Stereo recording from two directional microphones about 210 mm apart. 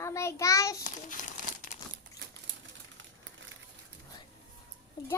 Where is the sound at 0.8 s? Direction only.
35° left (ahead or behind).